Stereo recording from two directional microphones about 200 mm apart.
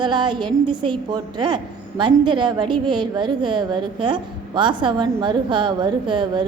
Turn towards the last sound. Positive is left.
turn(degrees=-25)  # may be behind; listen again after turning